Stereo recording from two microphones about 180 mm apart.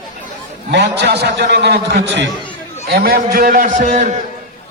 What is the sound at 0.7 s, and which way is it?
A man's voice, 70° right (ahead or behind).